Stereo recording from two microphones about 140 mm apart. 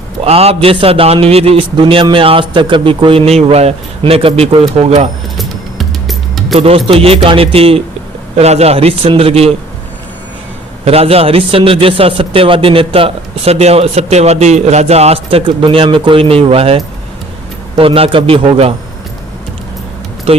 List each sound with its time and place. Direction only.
0.3 s a man's voice: 45° right (ahead or behind)
5.4 s music: centre (ahead or behind)
6.6 s a man's voice: 45° right (ahead or behind)
10.8 s a man's voice: 45° right (ahead or behind)
20.3 s a man's voice: 45° right (ahead or behind)